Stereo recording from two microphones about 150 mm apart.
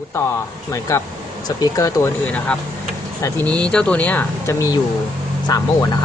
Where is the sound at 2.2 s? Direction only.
10° left (ahead or behind).